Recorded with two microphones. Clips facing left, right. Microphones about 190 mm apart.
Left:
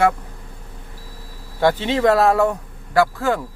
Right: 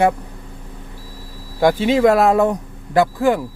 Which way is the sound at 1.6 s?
10° right (ahead or behind).